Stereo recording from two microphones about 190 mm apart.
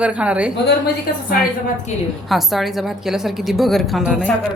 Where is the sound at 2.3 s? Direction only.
Centre (ahead or behind).